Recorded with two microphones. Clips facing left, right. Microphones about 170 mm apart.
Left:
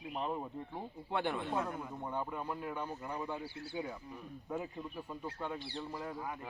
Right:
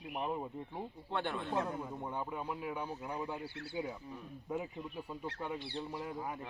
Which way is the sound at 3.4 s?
60° right (ahead or behind).